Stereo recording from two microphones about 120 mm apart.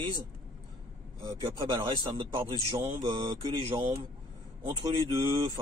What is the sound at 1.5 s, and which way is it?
Speech, 30° right (ahead or behind).